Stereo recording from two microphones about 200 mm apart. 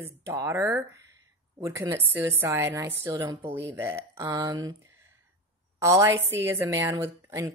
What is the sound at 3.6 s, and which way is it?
Speech, 10° right (ahead or behind).